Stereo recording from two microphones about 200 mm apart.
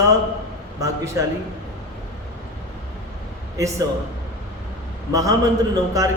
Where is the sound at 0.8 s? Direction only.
15° right (ahead or behind).